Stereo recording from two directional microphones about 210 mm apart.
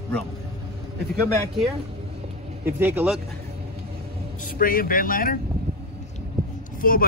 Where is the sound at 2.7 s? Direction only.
10° right (ahead or behind).